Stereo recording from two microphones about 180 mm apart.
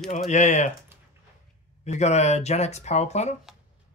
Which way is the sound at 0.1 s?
40° left (ahead or behind).